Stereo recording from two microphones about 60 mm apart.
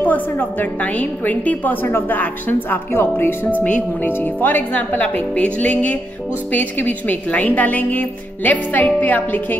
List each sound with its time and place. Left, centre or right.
0.0 s a woman's voice: left
3.6 s a woman's voice: left